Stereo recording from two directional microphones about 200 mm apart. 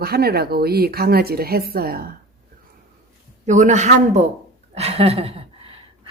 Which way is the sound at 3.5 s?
35° right (ahead or behind).